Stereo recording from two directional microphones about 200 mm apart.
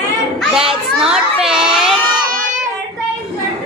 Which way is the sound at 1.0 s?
5° right (ahead or behind).